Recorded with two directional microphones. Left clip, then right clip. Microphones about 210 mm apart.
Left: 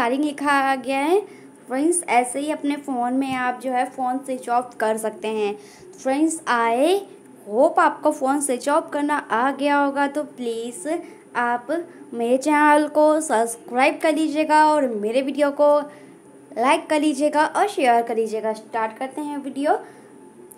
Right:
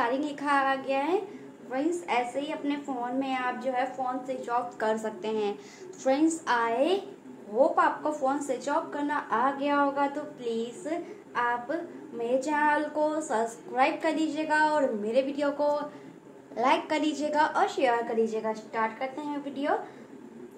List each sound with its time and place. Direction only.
0.0 s a woman's voice: 45° left (ahead or behind)